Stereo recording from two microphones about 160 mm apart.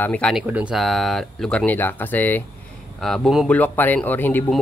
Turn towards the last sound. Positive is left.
turn(degrees=10)  # may be behind; listen again after turning